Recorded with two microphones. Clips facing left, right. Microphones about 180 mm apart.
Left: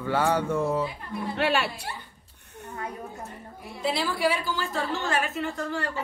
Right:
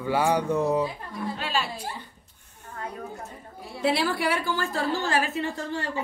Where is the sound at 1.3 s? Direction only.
65° left (ahead or behind).